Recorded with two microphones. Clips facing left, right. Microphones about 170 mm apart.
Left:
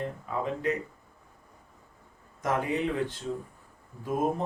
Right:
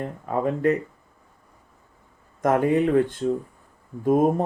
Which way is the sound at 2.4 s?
55° right (ahead or behind).